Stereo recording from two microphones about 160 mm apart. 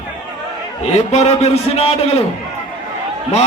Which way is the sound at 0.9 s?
45° left (ahead or behind).